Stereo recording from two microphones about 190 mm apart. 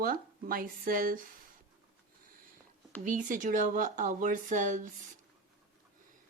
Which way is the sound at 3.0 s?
45° right (ahead or behind).